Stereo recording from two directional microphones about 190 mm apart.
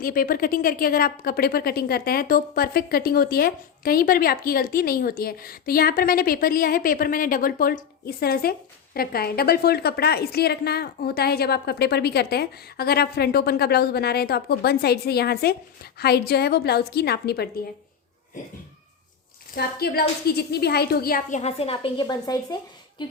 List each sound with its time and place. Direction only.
0.0 s a woman's voice: 50° left (ahead or behind)
19.5 s a woman's voice: 55° left (ahead or behind); by 22.5 s 20° left (ahead or behind)
23.0 s a sound: 25° left (ahead or behind)